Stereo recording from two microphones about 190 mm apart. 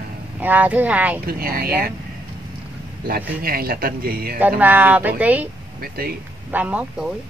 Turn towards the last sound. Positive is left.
turn(degrees=-5)  # may be behind; listen again after turning